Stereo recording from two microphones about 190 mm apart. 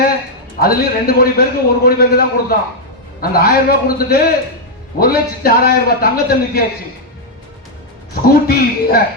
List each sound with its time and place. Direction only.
0.6 s a man's voice: 50° left (ahead or behind)
8.4 s speech: 55° left (ahead or behind)